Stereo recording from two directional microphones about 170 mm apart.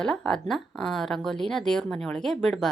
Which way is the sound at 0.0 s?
5° left (ahead or behind).